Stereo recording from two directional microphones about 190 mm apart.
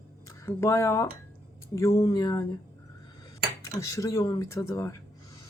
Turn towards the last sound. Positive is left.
turn(degrees=15)  # may be behind; listen again after turning